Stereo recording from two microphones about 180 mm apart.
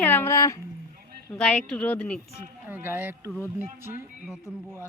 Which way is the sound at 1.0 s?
60° right (ahead or behind).